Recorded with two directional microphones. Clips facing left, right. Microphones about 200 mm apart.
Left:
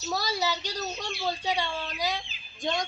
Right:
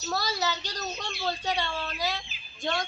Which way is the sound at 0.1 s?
10° left (ahead or behind).